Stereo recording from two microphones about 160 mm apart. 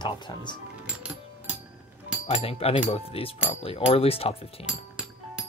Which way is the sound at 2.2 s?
40° left (ahead or behind).